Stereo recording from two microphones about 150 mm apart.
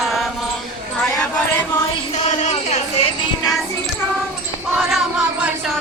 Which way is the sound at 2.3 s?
50° left (ahead or behind).